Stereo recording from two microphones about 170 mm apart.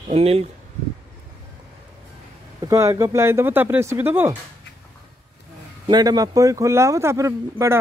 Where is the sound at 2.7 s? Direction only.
20° right (ahead or behind).